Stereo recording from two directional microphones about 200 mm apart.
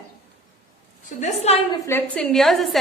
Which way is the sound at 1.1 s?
30° left (ahead or behind).